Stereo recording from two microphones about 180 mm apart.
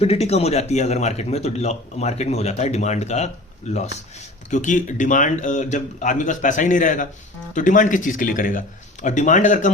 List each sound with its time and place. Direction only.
0.0 s a man's voice: 35° left (ahead or behind)
4.5 s speech: 45° left (ahead or behind)